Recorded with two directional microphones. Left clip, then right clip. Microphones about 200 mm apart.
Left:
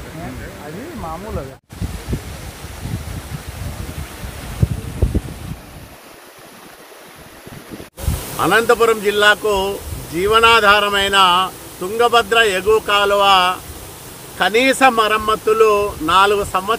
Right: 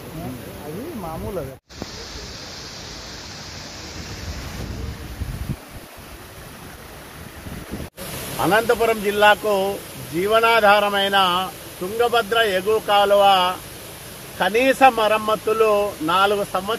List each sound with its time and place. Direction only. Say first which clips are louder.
8.4 s speech: left 4 dB; 15° left (ahead or behind)